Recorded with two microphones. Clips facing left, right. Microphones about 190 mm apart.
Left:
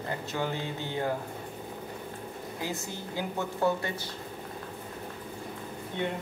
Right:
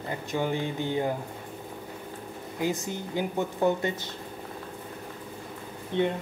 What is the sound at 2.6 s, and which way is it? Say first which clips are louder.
A woman's voice: right 8 dB; 15° right (ahead or behind).